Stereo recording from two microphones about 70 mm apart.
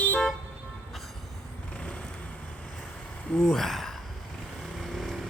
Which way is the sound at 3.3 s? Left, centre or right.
Centre.